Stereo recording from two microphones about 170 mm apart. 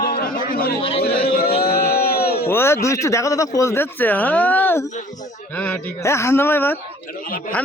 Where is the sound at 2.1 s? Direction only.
65° left (ahead or behind).